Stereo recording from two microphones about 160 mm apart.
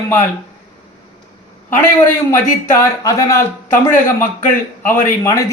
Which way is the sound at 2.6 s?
20° left (ahead or behind).